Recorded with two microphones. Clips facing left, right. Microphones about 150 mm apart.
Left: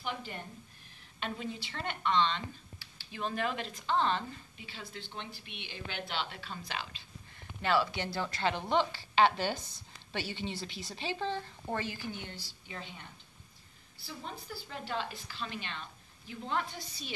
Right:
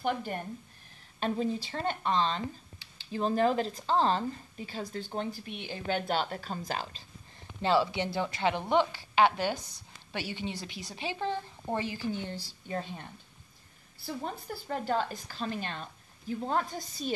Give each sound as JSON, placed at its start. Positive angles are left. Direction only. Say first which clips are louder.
{"t": 0.0, "sound": "a woman's voice", "louder": "right 8 dB", "side_deg": -50}
{"t": 1.2, "sound": "speech", "louder": "right 8 dB", "side_deg": -35}
{"t": 7.6, "sound": "a woman's voice", "louder": "right 4 dB", "side_deg": -25}
{"t": 12.4, "sound": "a woman's voice", "louder": "right 9 dB", "side_deg": -45}
{"t": 14.0, "sound": "a woman's voice", "louder": "right 7 dB", "side_deg": -45}